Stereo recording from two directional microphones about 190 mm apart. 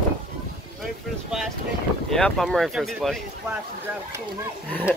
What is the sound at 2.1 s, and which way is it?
Speech, centre (ahead or behind).